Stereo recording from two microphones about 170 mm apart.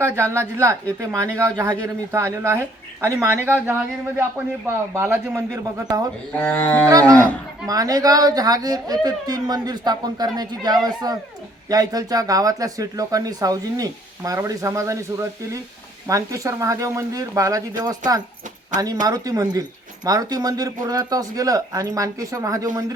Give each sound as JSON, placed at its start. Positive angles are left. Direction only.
{"t": 0.0, "sound": "speech", "side_deg": -15}
{"t": 6.4, "sound": "livestock", "side_deg": 10}
{"t": 6.8, "sound": "speech", "side_deg": -20}